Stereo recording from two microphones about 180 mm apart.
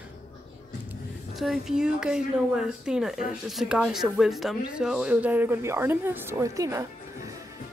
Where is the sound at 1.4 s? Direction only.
5° right (ahead or behind); by 6.8 s 20° right (ahead or behind).